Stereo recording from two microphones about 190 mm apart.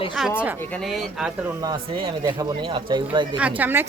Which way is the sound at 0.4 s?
Centre (ahead or behind).